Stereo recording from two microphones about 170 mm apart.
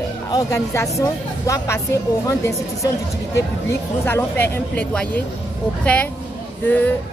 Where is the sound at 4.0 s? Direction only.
10° left (ahead or behind).